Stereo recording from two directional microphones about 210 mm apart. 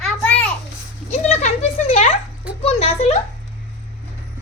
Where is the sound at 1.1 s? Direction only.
35° left (ahead or behind).